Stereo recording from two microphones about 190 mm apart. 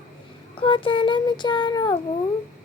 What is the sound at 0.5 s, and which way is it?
Child singing, 25° left (ahead or behind).